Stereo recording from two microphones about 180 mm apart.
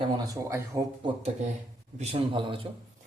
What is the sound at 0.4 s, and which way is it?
A man's voice, 15° right (ahead or behind).